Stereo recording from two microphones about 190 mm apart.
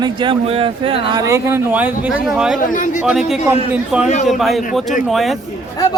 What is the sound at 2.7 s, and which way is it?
Speech, 45° left (ahead or behind).